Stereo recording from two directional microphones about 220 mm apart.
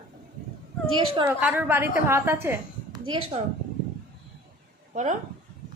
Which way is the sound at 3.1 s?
25° right (ahead or behind).